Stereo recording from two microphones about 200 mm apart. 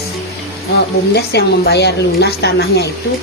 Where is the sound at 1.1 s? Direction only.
55° left (ahead or behind).